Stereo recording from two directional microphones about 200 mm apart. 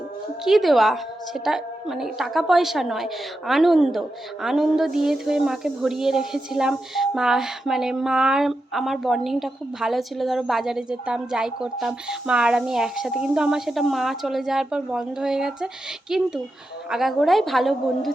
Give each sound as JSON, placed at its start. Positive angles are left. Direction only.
{"t": 0.4, "sound": "a woman's voice", "side_deg": 0}